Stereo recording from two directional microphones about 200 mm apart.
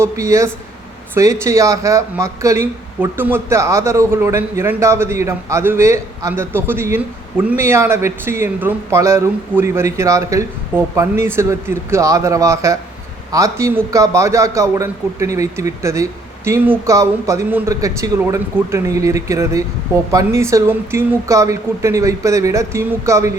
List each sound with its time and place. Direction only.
0.0 s a man's voice: 15° right (ahead or behind)